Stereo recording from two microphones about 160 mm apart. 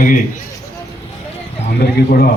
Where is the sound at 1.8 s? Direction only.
85° left.